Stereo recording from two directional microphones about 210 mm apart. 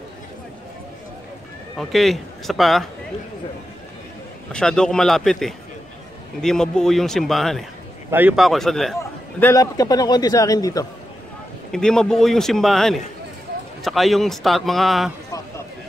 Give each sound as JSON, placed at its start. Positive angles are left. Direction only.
{"t": 1.8, "sound": "a man's voice", "side_deg": 0}
{"t": 4.5, "sound": "a man's voice", "side_deg": 5}
{"t": 9.4, "sound": "a man's voice", "side_deg": 15}
{"t": 11.7, "sound": "a man's voice", "side_deg": 5}